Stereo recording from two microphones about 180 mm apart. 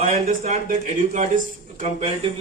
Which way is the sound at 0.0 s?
40° right (ahead or behind).